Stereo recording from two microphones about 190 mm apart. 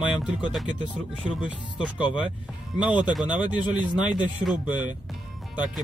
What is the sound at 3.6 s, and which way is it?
Speech, 25° left (ahead or behind).